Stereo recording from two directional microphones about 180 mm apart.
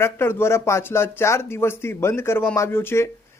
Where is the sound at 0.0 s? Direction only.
15° left (ahead or behind).